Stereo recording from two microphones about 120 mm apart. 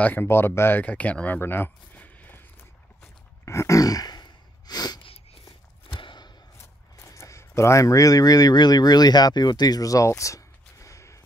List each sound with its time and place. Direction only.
0.0 s speech: 15° left (ahead or behind)
3.0 s gasp: 25° left (ahead or behind)
5.0 s a sound: 55° left (ahead or behind)
6.6 s speech: 25° left (ahead or behind)